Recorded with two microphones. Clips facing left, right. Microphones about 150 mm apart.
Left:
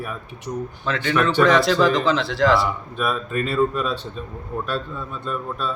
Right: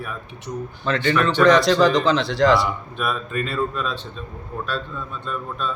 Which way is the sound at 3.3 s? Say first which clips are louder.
Left 2 dB; 45° left (ahead or behind).